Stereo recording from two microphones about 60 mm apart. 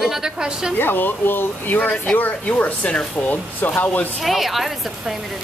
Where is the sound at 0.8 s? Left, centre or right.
Left.